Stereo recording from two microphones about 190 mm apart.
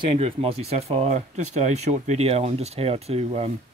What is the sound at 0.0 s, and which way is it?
Speech, 30° right (ahead or behind).